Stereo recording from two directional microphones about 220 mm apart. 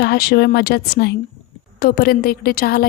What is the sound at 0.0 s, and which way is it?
A woman's voice, 45° left (ahead or behind).